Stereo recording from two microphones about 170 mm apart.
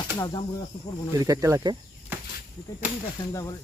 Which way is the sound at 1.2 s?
20° right (ahead or behind).